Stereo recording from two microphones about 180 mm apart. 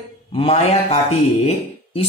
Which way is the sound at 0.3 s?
30° left (ahead or behind).